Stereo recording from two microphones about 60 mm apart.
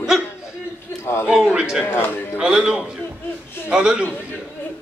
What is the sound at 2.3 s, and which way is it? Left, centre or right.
Music, centre.